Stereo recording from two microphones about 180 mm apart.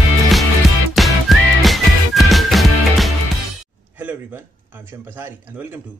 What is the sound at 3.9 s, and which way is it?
Speech, 10° right (ahead or behind).